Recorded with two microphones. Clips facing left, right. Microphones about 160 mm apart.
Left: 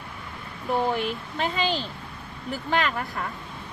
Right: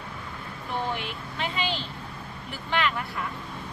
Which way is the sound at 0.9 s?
40° left (ahead or behind).